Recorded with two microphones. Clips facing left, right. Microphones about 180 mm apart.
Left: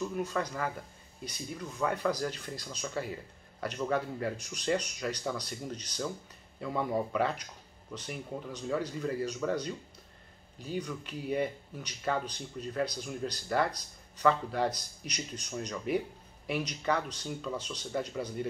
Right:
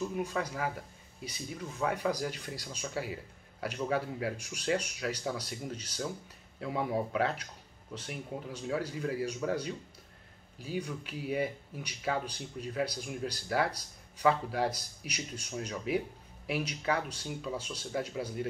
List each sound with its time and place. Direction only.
0.0 s speech: 10° right (ahead or behind)